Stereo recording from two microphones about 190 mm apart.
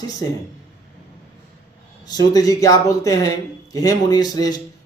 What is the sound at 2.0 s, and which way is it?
Speech, 20° left (ahead or behind).